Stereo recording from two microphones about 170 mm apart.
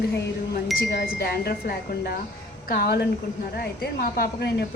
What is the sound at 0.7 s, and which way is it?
Speech, 70° left (ahead or behind).